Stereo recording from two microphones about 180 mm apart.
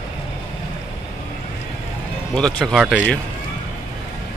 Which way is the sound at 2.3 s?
5° left (ahead or behind).